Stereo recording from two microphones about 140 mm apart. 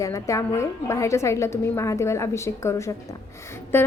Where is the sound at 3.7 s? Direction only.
15° left (ahead or behind).